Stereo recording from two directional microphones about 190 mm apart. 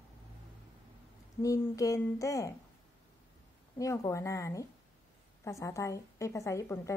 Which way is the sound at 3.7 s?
15° left (ahead or behind).